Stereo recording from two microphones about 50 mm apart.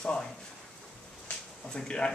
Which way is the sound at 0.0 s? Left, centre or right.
Centre.